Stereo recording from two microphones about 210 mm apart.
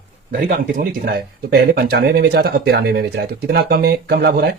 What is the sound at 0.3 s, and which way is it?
Speech, 45° right (ahead or behind).